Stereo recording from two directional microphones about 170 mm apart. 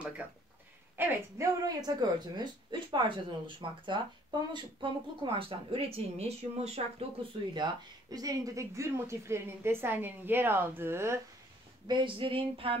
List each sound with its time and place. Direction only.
0.9 s speech: 10° right (ahead or behind); by 7.1 s 40° right (ahead or behind)
7.5 s speech: 25° right (ahead or behind)
11.9 s speech: 30° right (ahead or behind)